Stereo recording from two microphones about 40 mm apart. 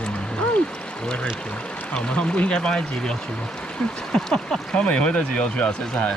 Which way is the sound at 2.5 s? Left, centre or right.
Left.